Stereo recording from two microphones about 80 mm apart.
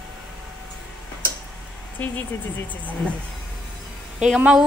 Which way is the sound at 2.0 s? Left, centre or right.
Centre.